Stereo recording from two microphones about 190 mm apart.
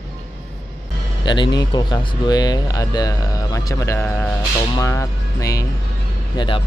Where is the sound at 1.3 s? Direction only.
20° left (ahead or behind).